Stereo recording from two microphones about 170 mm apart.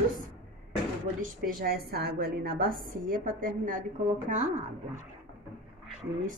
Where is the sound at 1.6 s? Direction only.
60° right (ahead or behind).